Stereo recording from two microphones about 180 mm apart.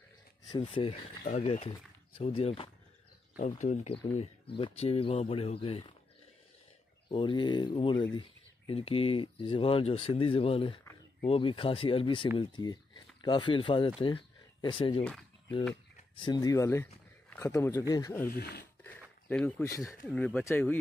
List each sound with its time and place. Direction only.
0.5 s speech: 25° left (ahead or behind)
1.2 s speech: 40° left (ahead or behind)
3.3 s speech: 40° left (ahead or behind)
7.1 s speech: 25° left (ahead or behind)
16.2 s speech: 20° left (ahead or behind)
18.3 s speech: 65° left (ahead or behind)
18.9 s a sound: 10° left (ahead or behind)
20.1 s speech: 5° left (ahead or behind)